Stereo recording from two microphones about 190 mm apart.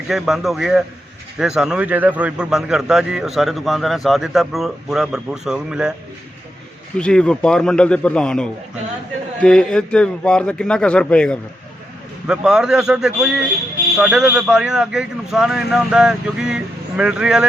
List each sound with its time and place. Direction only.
0.1 s a man's voice: centre (ahead or behind)
6.9 s a man's voice: 5° left (ahead or behind)